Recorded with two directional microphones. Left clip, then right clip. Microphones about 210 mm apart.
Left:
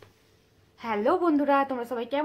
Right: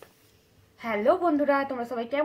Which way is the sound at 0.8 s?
30° left (ahead or behind).